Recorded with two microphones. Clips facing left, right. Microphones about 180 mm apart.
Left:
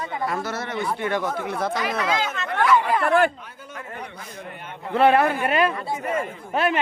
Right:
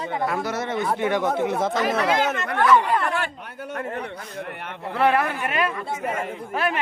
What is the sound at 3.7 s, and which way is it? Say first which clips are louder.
A man's voice: right 6 dB; 65° right (ahead or behind).